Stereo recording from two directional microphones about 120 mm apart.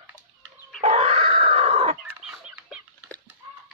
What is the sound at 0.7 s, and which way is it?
Grunt, 60° right (ahead or behind).